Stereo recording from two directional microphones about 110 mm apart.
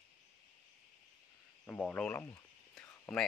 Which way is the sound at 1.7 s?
15° left (ahead or behind).